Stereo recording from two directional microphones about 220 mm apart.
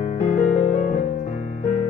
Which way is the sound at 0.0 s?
30° left (ahead or behind).